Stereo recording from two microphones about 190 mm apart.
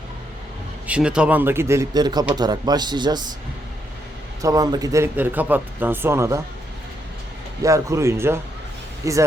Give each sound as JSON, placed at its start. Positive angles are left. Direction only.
{"t": 0.9, "sound": "speech", "side_deg": -5}
{"t": 4.4, "sound": "speech", "side_deg": -20}
{"t": 7.6, "sound": "speech", "side_deg": -15}